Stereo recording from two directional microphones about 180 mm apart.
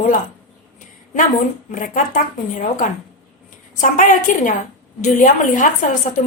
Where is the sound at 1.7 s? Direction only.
45° left (ahead or behind).